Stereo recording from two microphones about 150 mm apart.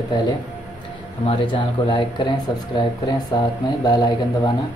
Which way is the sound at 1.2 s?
35° left (ahead or behind).